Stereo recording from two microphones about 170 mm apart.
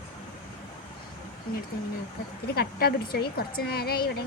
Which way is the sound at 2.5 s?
70° left (ahead or behind).